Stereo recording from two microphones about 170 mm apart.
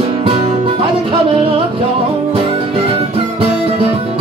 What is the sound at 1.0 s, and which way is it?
Music, 35° right (ahead or behind).